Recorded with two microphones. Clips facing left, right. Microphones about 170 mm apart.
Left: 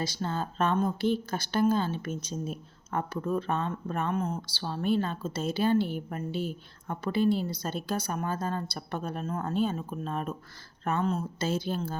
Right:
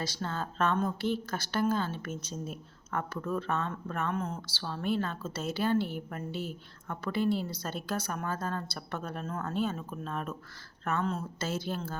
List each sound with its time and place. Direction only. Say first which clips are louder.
0.0 s a woman's voice: left 3 dB; 15° left (ahead or behind)
2.5 s speech: left 3 dB; 25° left (ahead or behind)
3.1 s a woman's voice: left 3 dB; 15° left (ahead or behind)